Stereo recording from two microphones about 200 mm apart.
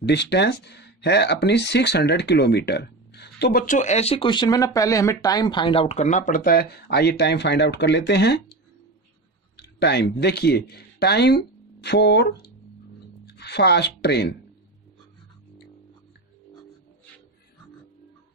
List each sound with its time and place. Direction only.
0.0 s speech: 60° left (ahead or behind)
9.6 s speech: 55° left (ahead or behind)
13.2 s a sound: 55° left (ahead or behind)